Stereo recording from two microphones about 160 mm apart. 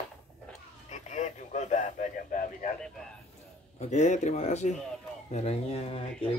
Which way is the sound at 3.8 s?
45° left (ahead or behind).